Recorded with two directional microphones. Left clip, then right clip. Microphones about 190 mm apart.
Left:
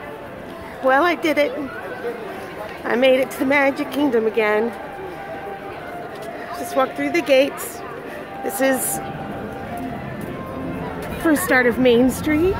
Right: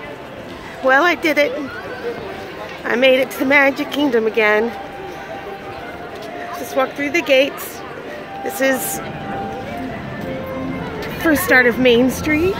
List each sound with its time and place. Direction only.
0.8 s speech: 5° left (ahead or behind)
2.8 s speech: 10° left (ahead or behind)
6.7 s speech: 20° left (ahead or behind)
11.2 s speech: 15° left (ahead or behind)